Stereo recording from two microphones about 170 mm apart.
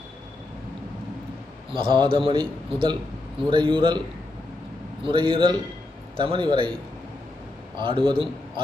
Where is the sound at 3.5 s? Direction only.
30° right (ahead or behind).